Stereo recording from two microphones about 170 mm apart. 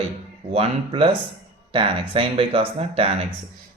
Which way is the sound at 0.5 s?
35° right (ahead or behind).